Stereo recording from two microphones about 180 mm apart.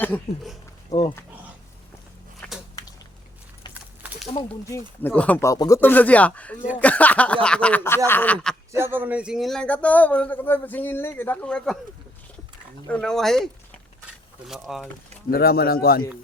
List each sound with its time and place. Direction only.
0.0 s a man's voice: 10° left (ahead or behind)
0.9 s speech: 35° left (ahead or behind)
2.4 s a sound: 10° left (ahead or behind)
4.7 s a man's voice: 10° left (ahead or behind)
8.8 s a man's voice: 10° right (ahead or behind)
12.9 s speech: 5° left (ahead or behind)
15.3 s speech: 60° left (ahead or behind)